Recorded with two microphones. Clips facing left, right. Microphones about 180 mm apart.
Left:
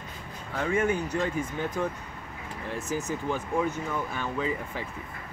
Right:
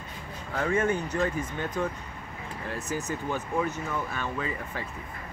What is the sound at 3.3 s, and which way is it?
Speech, 10° left (ahead or behind).